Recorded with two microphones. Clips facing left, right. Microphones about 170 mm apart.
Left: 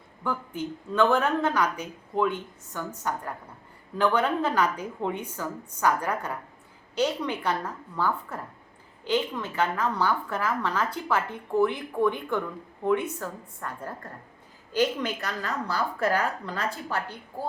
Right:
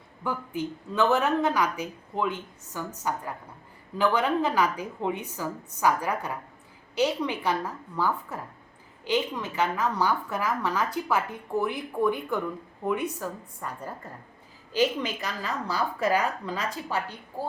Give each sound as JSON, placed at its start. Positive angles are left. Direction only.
{"t": 0.3, "sound": "a woman's voice", "side_deg": -10}